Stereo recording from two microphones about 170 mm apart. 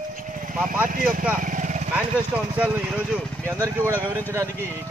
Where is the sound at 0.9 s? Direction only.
55° right (ahead or behind).